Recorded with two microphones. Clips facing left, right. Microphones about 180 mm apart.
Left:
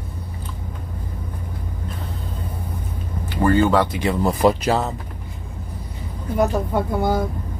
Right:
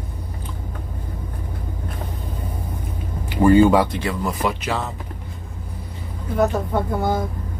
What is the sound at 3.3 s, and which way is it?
Speech, 15° right (ahead or behind).